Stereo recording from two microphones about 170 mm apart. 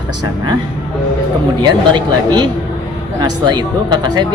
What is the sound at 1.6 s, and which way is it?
Speech, 25° right (ahead or behind).